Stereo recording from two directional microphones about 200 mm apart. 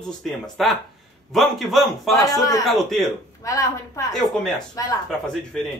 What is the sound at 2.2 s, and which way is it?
Speech, 15° left (ahead or behind).